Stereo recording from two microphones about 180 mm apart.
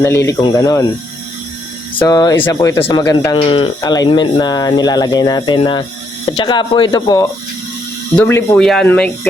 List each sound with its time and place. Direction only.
0.0 s speech: 15° left (ahead or behind)
2.0 s speech: 20° left (ahead or behind)